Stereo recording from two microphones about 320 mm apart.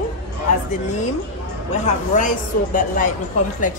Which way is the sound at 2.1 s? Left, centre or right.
Left.